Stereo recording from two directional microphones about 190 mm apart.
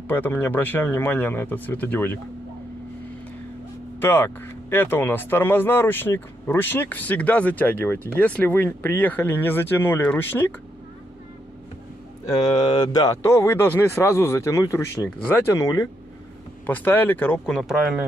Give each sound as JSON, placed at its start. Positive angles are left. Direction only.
{"t": 0.1, "sound": "speech", "side_deg": 10}
{"t": 4.0, "sound": "speech", "side_deg": 10}
{"t": 12.3, "sound": "speech", "side_deg": 20}
{"t": 17.6, "sound": "speech", "side_deg": -5}